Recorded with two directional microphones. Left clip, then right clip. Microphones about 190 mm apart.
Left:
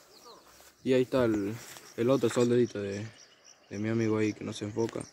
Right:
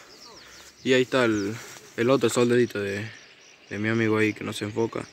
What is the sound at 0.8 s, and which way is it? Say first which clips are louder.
Speech: right 5 dB; centre (ahead or behind).